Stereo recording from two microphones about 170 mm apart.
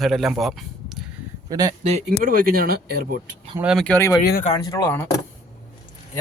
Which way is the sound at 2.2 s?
55° right (ahead or behind).